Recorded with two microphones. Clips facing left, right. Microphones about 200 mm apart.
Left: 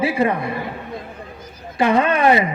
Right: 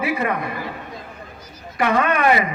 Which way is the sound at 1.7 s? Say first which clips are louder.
Left 3 dB; 30° left (ahead or behind).